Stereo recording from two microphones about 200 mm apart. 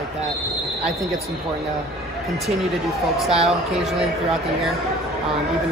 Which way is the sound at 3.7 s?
Centre (ahead or behind).